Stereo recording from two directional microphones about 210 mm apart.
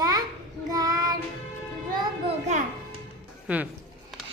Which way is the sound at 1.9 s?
20° right (ahead or behind).